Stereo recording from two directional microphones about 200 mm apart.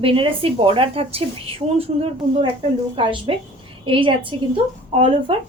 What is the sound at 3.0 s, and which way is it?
A woman's voice, 25° right (ahead or behind).